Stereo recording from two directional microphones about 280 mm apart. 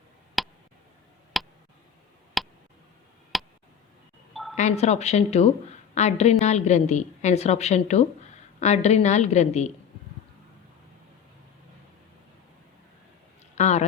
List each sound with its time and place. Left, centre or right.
0.4 s a sound: centre
2.4 s tick: centre
4.5 s a woman's voice: left
13.6 s a woman's voice: left